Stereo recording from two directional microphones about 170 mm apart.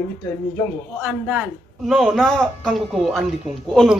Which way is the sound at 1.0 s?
5° right (ahead or behind).